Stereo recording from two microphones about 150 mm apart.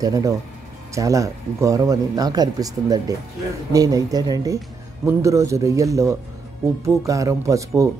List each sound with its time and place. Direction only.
0.0 s speech: 25° right (ahead or behind)